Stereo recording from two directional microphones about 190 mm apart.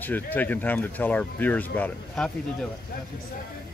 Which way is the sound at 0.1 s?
10° left (ahead or behind).